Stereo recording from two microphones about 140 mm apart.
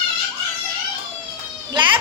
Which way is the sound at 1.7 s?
35° right (ahead or behind).